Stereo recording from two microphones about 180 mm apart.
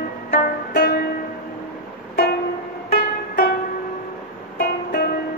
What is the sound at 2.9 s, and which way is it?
Music, 55° left (ahead or behind).